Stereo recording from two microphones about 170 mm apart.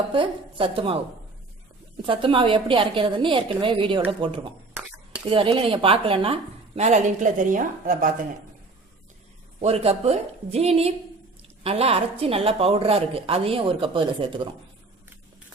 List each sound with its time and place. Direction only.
0.1 s a woman's voice: 30° right (ahead or behind)
2.0 s a woman's voice: 30° right (ahead or behind); by 8.1 s 50° right (ahead or behind)
9.6 s a woman's voice: 35° right (ahead or behind)